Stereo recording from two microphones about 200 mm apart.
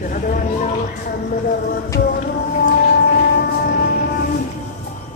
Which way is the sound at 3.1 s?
55° left (ahead or behind).